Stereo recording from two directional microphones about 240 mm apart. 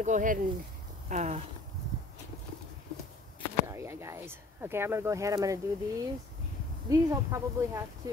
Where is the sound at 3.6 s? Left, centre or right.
Centre.